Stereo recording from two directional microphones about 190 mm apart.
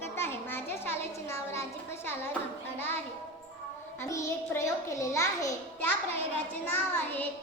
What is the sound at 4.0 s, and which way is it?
A child's voice, 15° left (ahead or behind).